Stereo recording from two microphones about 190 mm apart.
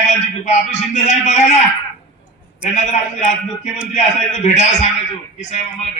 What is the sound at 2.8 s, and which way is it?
A man's voice, 40° left (ahead or behind).